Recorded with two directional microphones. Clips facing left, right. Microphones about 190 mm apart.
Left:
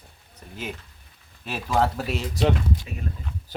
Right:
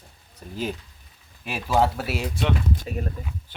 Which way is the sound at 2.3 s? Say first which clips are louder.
Left 5 dB; 40° left (ahead or behind).